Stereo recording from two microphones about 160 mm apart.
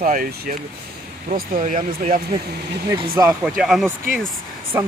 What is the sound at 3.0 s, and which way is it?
Speech, 25° right (ahead or behind).